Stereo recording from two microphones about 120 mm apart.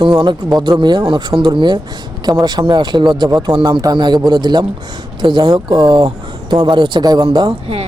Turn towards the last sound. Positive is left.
turn(degrees=-40)  # may be behind; listen again after turning